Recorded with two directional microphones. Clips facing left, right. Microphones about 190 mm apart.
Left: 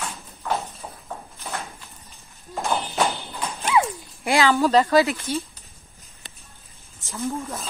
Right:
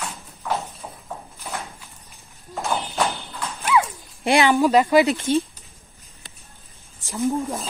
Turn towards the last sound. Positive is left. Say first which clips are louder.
# right 5 dB
turn(degrees=-20)  # may be behind; listen again after turning